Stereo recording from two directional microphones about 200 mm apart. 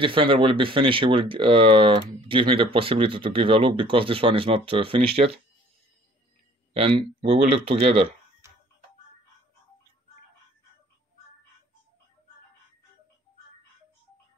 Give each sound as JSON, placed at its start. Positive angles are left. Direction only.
{"t": 0.0, "sound": "speech", "side_deg": -25}
{"t": 6.7, "sound": "speech", "side_deg": -30}